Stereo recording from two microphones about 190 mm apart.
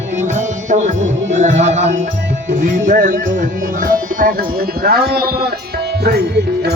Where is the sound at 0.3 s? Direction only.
40° right (ahead or behind); by 5.5 s 55° right (ahead or behind).